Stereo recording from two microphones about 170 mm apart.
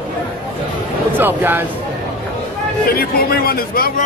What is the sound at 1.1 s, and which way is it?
Speech, 10° right (ahead or behind).